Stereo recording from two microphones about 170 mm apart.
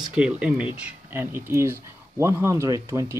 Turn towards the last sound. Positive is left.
turn(degrees=-15)  # may be behind; listen again after turning